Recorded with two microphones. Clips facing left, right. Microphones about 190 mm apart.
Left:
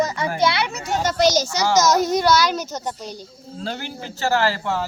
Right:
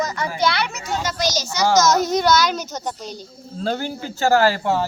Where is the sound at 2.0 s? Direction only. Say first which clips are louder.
Even; 5° left (ahead or behind).